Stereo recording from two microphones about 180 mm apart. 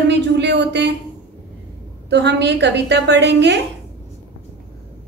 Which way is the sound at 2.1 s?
70° right (ahead or behind).